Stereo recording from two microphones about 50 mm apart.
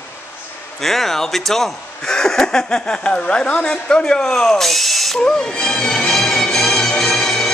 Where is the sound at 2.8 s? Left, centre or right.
Centre.